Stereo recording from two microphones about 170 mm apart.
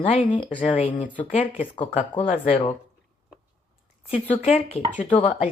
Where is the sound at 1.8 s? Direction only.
30° left (ahead or behind).